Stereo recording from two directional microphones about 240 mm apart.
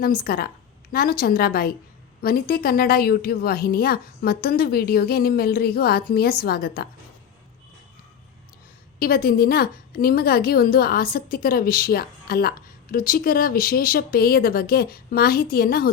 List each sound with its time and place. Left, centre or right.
0.0 s a woman's voice: left
9.0 s a woman's voice: left